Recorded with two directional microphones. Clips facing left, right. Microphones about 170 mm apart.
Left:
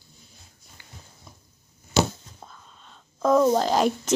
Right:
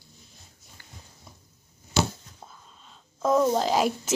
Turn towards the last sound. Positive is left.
turn(degrees=-5)  # may be behind; listen again after turning